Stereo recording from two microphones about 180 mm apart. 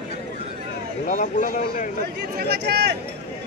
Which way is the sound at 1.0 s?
45° left (ahead or behind).